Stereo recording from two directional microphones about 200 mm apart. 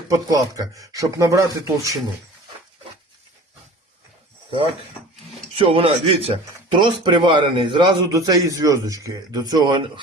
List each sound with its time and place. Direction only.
0.1 s a man's voice: 15° right (ahead or behind)
5.5 s speech: 25° right (ahead or behind)